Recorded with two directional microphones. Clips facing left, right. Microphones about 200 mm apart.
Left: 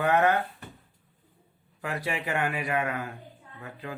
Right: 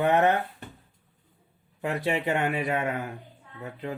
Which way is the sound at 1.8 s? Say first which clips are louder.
Right 5 dB; 25° right (ahead or behind).